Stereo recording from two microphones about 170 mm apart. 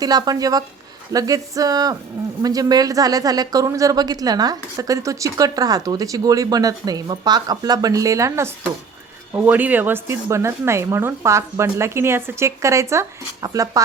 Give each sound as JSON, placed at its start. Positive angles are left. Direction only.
{"t": 0.0, "sound": "speech", "side_deg": -20}